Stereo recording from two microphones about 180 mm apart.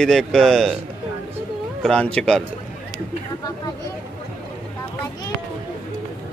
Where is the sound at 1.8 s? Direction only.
5° left (ahead or behind).